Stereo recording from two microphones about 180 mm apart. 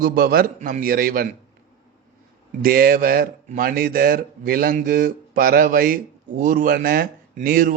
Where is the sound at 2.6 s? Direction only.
55° right (ahead or behind).